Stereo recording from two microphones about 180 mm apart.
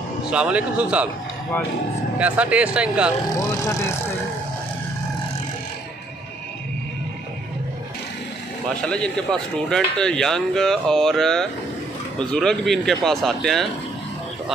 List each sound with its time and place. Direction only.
0.3 s speech: 5° right (ahead or behind)
2.1 s speech: 5° right (ahead or behind)
3.4 s speech: 15° left (ahead or behind)
8.8 s speech: 5° left (ahead or behind)